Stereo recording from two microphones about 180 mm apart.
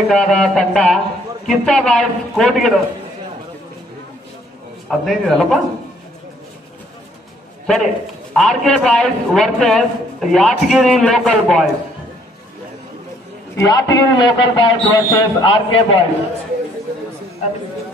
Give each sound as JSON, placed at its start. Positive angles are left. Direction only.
{"t": 0.1, "sound": "a man's voice", "side_deg": 5}
{"t": 5.0, "sound": "a man's voice", "side_deg": 0}
{"t": 7.6, "sound": "a man's voice", "side_deg": 0}
{"t": 13.6, "sound": "a man's voice", "side_deg": 20}